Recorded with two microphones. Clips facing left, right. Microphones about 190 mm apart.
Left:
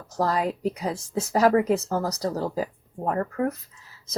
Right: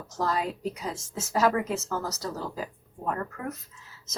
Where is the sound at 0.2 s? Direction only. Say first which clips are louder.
Left 4 dB; 35° left (ahead or behind).